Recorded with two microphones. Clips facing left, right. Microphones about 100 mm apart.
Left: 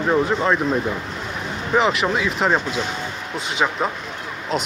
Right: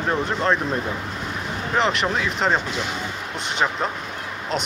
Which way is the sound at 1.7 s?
5° left (ahead or behind).